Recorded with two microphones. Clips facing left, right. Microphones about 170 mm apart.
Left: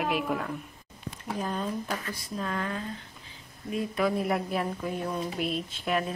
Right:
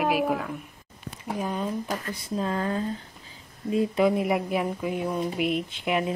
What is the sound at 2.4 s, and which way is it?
Speech, 30° right (ahead or behind).